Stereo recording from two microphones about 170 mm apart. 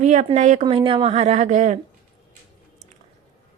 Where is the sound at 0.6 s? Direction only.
30° right (ahead or behind).